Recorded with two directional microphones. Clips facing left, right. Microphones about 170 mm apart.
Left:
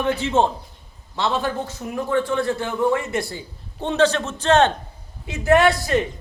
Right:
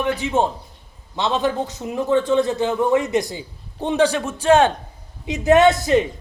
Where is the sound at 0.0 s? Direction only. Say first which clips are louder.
Even; 15° right (ahead or behind).